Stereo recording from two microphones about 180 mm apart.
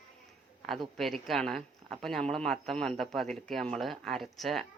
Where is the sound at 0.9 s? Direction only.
Centre (ahead or behind).